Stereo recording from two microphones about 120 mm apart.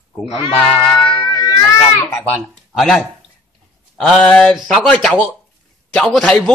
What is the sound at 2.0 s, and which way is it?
Speech, 15° left (ahead or behind).